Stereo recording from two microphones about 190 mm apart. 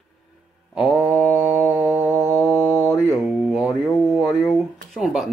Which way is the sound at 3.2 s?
5° right (ahead or behind).